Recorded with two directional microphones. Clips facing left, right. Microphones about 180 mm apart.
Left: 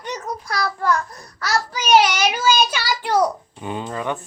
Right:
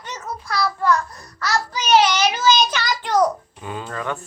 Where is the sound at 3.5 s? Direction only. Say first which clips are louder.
Left 3 dB; 25° left (ahead or behind).